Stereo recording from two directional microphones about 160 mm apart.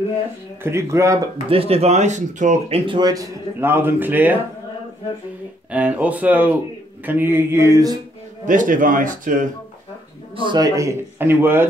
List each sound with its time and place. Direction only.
0.7 s a man's voice: 20° right (ahead or behind)
1.5 s speech: 35° right (ahead or behind)
2.8 s a man's voice: 30° right (ahead or behind); by 4.4 s 10° right (ahead or behind)
5.7 s a man's voice: 10° right (ahead or behind)
8.5 s speech: 55° right (ahead or behind)
10.3 s a man's voice: 30° right (ahead or behind); by 11.6 s 15° right (ahead or behind)